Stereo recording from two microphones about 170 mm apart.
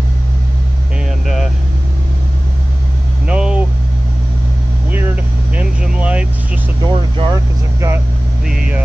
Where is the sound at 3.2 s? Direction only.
5° right (ahead or behind).